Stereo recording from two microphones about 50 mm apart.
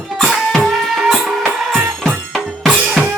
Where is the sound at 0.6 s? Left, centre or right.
Centre.